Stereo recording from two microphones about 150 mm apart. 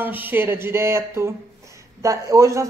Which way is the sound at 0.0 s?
15° right (ahead or behind).